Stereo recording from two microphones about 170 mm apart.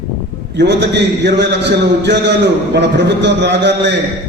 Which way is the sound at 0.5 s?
90° right.